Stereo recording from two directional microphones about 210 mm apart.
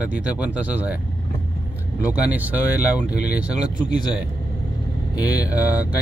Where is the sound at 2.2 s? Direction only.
5° right (ahead or behind).